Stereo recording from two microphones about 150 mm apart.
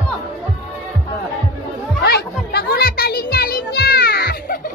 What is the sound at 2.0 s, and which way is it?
Music, 90° left.